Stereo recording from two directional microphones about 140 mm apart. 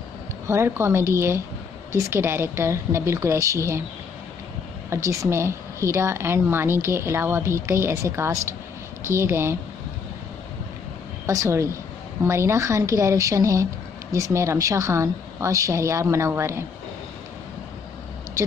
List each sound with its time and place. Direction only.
0.5 s speech: 20° right (ahead or behind)
4.8 s speech: 20° right (ahead or behind)
11.2 s speech: 20° right (ahead or behind)